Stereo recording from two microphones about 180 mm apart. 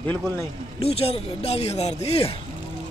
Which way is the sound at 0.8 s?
35° left (ahead or behind).